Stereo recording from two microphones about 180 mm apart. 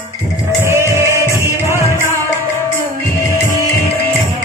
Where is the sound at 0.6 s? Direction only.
15° right (ahead or behind).